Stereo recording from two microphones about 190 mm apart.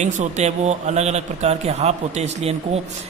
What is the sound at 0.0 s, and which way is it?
A man's voice, 35° right (ahead or behind).